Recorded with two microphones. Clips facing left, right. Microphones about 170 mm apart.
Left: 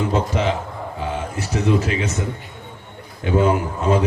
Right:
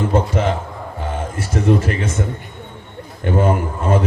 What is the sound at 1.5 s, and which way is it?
Speech, 50° right (ahead or behind).